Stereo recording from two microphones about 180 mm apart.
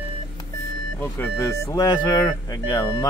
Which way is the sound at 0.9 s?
10° left (ahead or behind).